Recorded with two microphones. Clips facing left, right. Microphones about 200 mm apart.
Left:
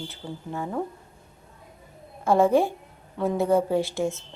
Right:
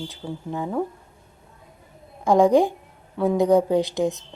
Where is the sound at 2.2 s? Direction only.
15° right (ahead or behind).